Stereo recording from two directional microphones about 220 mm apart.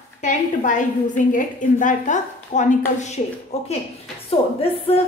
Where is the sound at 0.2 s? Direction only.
35° left (ahead or behind).